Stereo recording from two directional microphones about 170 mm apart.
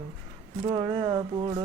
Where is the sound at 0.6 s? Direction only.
25° right (ahead or behind).